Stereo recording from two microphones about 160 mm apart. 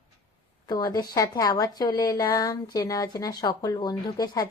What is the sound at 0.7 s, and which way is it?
Speech, 25° left (ahead or behind).